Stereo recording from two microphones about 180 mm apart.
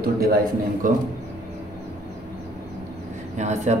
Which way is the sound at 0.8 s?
50° right (ahead or behind).